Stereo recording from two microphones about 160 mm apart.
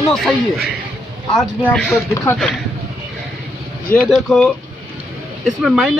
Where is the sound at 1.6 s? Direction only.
5° left (ahead or behind).